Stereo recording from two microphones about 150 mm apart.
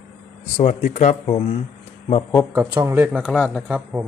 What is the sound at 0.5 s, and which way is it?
Speech, 50° left (ahead or behind).